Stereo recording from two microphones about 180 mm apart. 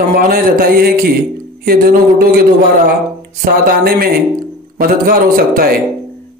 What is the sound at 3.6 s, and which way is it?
A man's voice, 55° right (ahead or behind).